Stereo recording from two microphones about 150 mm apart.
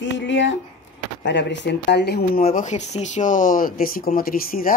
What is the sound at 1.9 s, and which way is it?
Speech, 90° left.